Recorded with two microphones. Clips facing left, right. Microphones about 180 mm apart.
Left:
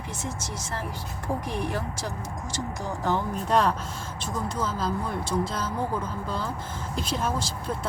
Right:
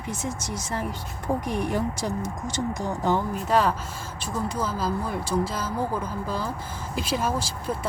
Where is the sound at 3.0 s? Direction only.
10° right (ahead or behind).